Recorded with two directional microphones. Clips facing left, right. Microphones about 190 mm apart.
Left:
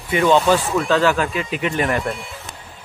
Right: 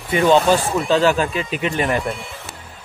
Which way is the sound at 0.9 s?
20° right (ahead or behind).